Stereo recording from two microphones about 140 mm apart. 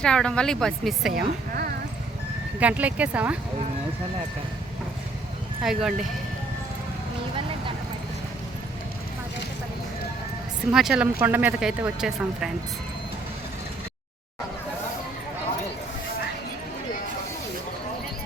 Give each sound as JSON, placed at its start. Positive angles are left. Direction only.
{"t": 0.0, "sound": "speech", "side_deg": 5}
{"t": 1.1, "sound": "a woman's voice", "side_deg": -90}
{"t": 2.6, "sound": "speech", "side_deg": -10}
{"t": 5.6, "sound": "speech", "side_deg": 0}
{"t": 10.7, "sound": "speech", "side_deg": -5}